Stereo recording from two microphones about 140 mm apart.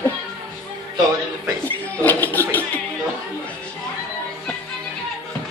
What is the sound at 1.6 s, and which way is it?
Music, 15° left (ahead or behind).